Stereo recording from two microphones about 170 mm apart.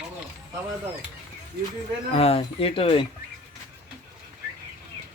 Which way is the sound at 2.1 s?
35° left (ahead or behind).